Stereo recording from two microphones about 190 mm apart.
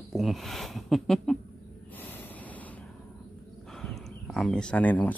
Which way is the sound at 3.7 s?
Centre (ahead or behind).